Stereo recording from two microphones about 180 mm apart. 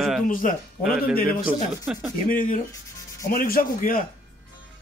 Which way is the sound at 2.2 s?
50° left (ahead or behind).